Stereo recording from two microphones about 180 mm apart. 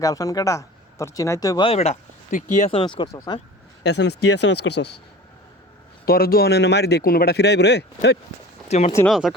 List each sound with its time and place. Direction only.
0.0 s speech: 20° left (ahead or behind)
3.8 s speech: 70° left (ahead or behind)
6.1 s speech: 55° left (ahead or behind); by 8.2 s 70° left (ahead or behind)
8.7 s speech: 40° left (ahead or behind)
9.0 s speech: centre (ahead or behind)